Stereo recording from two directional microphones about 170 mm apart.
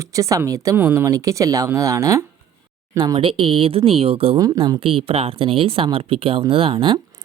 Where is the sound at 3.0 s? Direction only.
30° right (ahead or behind).